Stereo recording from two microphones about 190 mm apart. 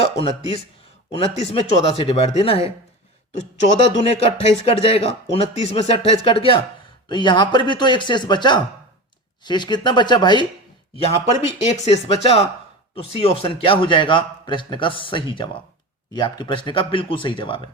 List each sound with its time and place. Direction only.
0.0 s a man's voice: 30° left (ahead or behind)
4.0 s a man's voice: 35° left (ahead or behind)
10.9 s a man's voice: 35° left (ahead or behind)